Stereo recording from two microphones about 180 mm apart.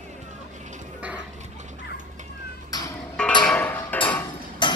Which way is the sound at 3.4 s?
10° left (ahead or behind).